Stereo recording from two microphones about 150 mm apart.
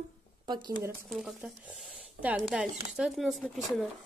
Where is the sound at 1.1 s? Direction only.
Centre (ahead or behind).